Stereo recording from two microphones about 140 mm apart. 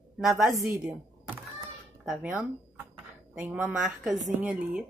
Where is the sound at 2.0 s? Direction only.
5° right (ahead or behind).